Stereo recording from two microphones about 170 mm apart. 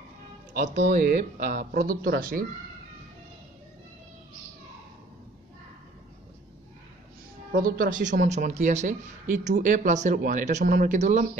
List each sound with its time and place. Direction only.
0.5 s speech: 45° right (ahead or behind)
7.5 s speech: 55° right (ahead or behind)